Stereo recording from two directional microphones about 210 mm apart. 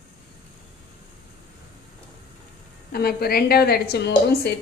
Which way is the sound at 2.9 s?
45° left (ahead or behind).